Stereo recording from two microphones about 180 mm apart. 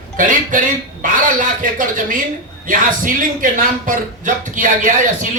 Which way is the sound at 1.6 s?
50° right (ahead or behind).